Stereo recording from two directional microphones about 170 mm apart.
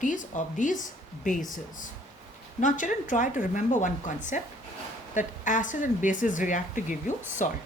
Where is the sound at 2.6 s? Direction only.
50° left (ahead or behind).